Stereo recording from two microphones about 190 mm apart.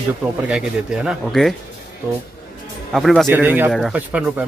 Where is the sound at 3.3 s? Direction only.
10° right (ahead or behind).